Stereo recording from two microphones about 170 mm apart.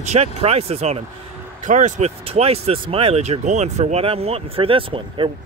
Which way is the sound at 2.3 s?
35° right (ahead or behind).